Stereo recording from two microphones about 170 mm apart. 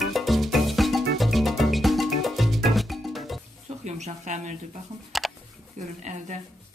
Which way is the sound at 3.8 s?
45° right (ahead or behind).